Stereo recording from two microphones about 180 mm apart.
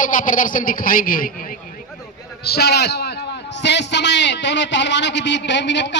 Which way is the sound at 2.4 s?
60° left (ahead or behind).